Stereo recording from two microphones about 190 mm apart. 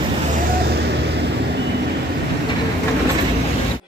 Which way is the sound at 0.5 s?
60° right (ahead or behind).